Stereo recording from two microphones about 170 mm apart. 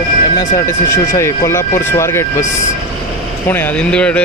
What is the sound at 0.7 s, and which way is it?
Speech, 15° left (ahead or behind).